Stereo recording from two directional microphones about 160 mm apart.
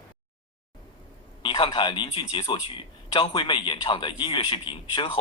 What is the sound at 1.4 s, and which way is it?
A man's voice, 30° left (ahead or behind).